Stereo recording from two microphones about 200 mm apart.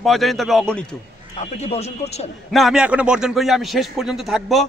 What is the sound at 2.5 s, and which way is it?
A man's voice, centre (ahead or behind).